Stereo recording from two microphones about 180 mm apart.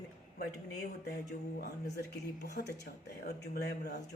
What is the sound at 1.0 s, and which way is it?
Speech, 65° left (ahead or behind).